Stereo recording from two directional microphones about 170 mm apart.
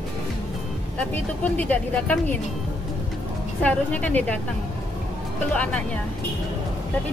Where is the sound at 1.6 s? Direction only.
10° left (ahead or behind).